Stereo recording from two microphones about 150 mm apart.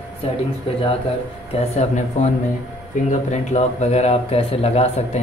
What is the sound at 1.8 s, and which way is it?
Speech, 50° left (ahead or behind).